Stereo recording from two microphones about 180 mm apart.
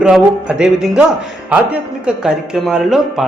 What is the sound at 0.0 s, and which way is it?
Speech, 5° right (ahead or behind).